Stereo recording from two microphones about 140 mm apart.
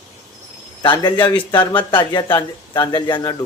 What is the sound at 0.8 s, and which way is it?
Speech, 30° left (ahead or behind).